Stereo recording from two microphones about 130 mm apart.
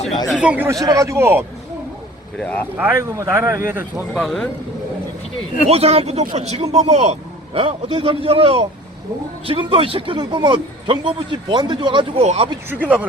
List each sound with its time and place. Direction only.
0.3 s speech: 10° right (ahead or behind)
0.7 s speech: 25° right (ahead or behind)
2.4 s speech: 10° left (ahead or behind)
2.7 s speech: 20° right (ahead or behind)
4.1 s speech: 5° left (ahead or behind)
5.6 s a man's voice: 50° right (ahead or behind)
7.6 s a man's voice: 45° right (ahead or behind)
12.2 s a man's voice: 55° right (ahead or behind)
12.8 s speech: 15° right (ahead or behind)